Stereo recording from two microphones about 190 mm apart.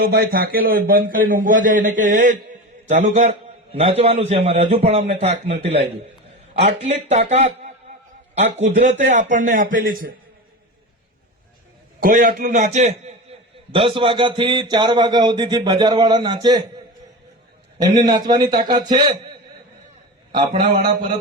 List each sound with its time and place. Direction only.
0.0 s a man's voice: 50° right (ahead or behind)
11.9 s a man's voice: 45° right (ahead or behind); by 16.6 s 20° right (ahead or behind)
17.8 s a man's voice: 25° right (ahead or behind)